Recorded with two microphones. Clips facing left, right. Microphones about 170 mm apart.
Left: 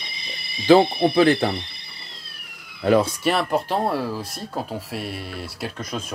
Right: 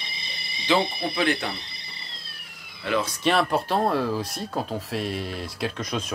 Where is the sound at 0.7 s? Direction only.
35° left (ahead or behind).